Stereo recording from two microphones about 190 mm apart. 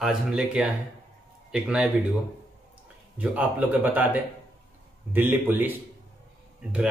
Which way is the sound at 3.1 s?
10° right (ahead or behind).